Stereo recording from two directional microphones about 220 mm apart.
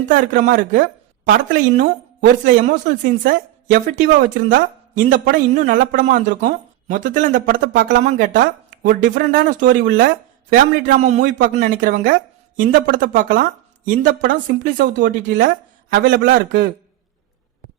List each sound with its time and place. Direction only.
0.1 s speech: 40° right (ahead or behind)
9.6 s speech: 50° right (ahead or behind)